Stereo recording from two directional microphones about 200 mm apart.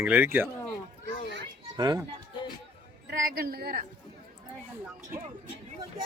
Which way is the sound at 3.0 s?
45° right (ahead or behind).